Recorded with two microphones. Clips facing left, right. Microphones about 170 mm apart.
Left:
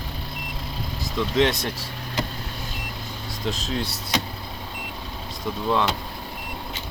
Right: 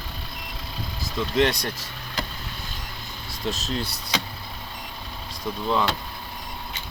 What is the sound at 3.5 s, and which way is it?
Speech, centre (ahead or behind).